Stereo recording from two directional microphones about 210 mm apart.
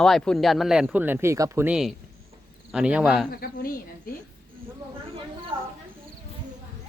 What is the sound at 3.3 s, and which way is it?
Speech, 45° left (ahead or behind).